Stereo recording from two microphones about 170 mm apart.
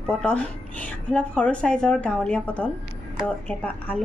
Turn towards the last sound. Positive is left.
turn(degrees=5)  # may be behind; listen again after turning